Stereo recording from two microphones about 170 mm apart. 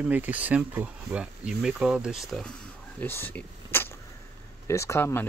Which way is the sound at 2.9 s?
10° left (ahead or behind).